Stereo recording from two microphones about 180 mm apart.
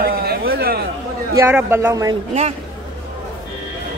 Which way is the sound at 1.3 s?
15° right (ahead or behind).